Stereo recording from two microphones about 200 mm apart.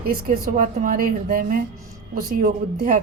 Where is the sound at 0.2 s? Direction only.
45° right (ahead or behind).